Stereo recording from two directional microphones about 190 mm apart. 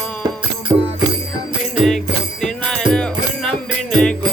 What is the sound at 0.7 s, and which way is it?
Music, 15° right (ahead or behind).